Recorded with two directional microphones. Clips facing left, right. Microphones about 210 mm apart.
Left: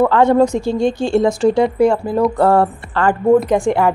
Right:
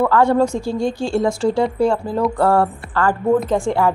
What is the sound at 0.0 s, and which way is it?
A woman's voice, 20° left (ahead or behind).